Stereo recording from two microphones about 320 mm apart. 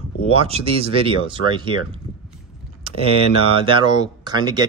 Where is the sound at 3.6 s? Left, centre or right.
Centre.